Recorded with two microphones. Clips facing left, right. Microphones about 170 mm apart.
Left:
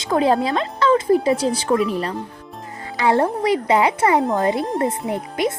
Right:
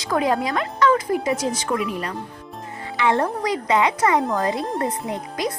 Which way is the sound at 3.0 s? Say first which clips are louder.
Left 3 dB; 30° left (ahead or behind).